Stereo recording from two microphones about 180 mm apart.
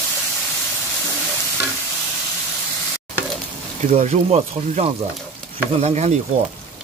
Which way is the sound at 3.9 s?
40° right (ahead or behind).